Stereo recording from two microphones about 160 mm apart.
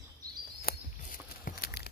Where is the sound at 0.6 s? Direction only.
65° left (ahead or behind).